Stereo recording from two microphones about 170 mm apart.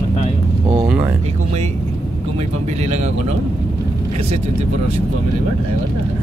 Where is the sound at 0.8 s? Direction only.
10° right (ahead or behind).